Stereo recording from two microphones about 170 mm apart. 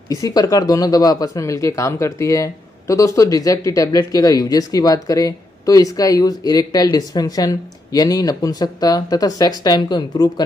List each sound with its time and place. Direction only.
0.1 s speech: 20° left (ahead or behind)